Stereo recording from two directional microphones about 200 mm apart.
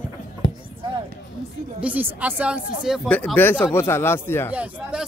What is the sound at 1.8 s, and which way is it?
A woman's voice, 10° right (ahead or behind).